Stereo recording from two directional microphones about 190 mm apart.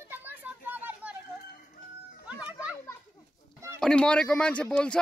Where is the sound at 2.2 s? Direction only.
5° right (ahead or behind).